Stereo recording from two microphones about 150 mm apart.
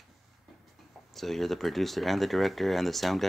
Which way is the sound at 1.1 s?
Centre (ahead or behind).